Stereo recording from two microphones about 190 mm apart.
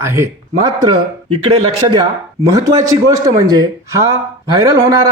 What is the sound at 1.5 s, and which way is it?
A man's voice, 30° right (ahead or behind).